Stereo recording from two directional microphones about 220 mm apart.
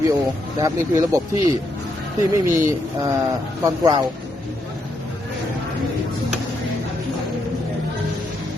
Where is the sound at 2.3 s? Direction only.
10° right (ahead or behind).